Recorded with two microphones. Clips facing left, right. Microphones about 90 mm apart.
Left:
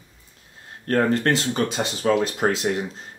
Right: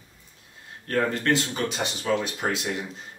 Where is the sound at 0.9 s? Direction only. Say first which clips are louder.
Left 4 dB; 45° left (ahead or behind).